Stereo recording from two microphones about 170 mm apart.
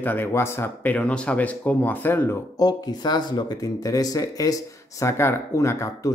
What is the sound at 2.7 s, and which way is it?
Speech, 25° left (ahead or behind).